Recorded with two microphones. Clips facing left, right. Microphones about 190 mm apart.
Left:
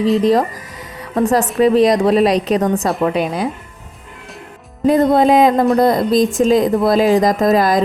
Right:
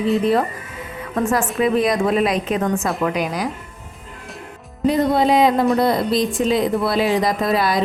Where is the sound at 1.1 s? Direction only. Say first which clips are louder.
Left 5 dB; 35° left (ahead or behind).